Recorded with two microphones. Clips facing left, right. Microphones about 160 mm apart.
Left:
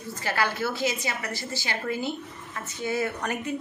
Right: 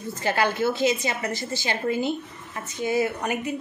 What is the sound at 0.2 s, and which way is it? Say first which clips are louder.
A woman's voice: right 4 dB; 20° right (ahead or behind).